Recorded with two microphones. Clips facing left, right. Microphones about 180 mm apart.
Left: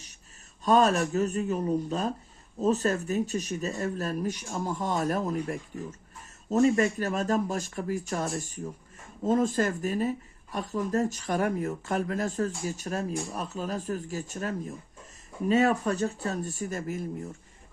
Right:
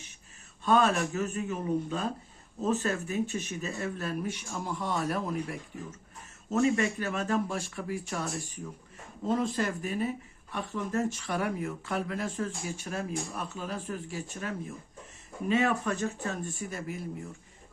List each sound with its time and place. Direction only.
0.6 s speech: 40° left (ahead or behind)